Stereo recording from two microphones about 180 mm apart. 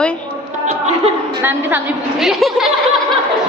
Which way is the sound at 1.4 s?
10° right (ahead or behind).